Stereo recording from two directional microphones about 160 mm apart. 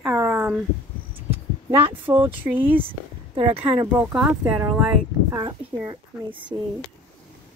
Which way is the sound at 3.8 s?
10° right (ahead or behind).